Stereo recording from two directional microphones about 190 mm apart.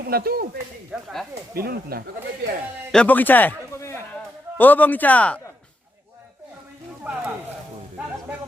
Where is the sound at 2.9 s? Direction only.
5° left (ahead or behind).